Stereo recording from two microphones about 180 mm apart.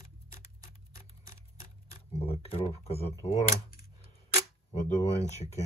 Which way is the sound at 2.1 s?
35° left (ahead or behind).